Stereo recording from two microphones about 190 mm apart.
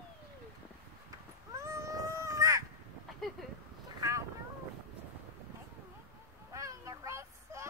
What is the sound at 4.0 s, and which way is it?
Boat, 15° right (ahead or behind).